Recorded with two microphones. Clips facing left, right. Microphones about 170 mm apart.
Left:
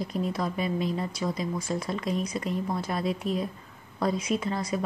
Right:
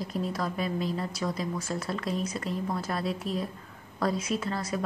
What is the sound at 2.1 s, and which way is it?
Speech, 35° right (ahead or behind).